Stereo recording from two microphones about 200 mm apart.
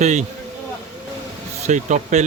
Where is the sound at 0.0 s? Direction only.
35° right (ahead or behind).